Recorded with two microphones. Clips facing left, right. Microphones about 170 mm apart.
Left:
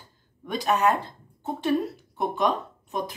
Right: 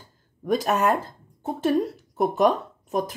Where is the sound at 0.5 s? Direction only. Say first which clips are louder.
Right 2 dB; 45° right (ahead or behind).